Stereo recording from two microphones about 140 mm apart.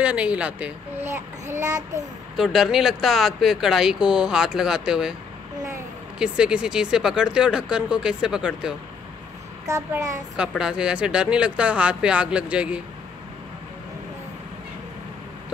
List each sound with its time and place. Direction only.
0.0 s speech: 10° right (ahead or behind)
2.3 s speech: centre (ahead or behind)
6.1 s speech: 5° right (ahead or behind)
9.7 s speech: 20° right (ahead or behind)
10.6 s speech: 5° right (ahead or behind)